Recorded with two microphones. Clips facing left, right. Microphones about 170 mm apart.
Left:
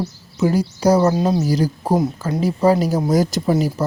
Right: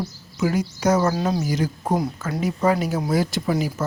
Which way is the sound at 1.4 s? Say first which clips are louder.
Left 5 dB; 35° left (ahead or behind).